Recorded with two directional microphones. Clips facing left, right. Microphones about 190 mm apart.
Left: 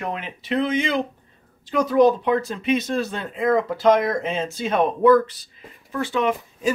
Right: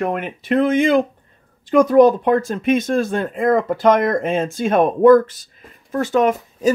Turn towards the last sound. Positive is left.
turn(degrees=-45)  # may be behind; listen again after turning